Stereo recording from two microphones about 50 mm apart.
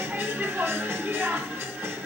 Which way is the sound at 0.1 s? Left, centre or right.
Right.